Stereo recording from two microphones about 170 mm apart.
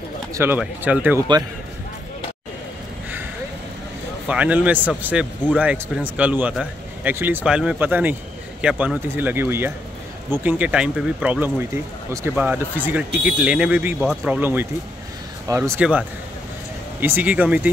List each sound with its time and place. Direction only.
0.3 s speech: 15° right (ahead or behind)
4.3 s speech: 10° right (ahead or behind)
15.8 s speech: 5° right (ahead or behind)